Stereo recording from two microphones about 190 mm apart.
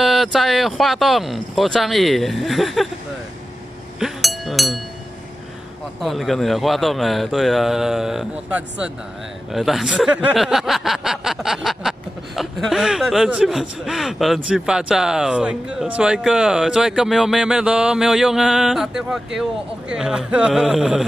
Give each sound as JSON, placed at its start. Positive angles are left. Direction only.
{"t": 0.0, "sound": "a man's voice", "side_deg": 0}
{"t": 4.0, "sound": "chink", "side_deg": 0}
{"t": 5.9, "sound": "a man's voice", "side_deg": 0}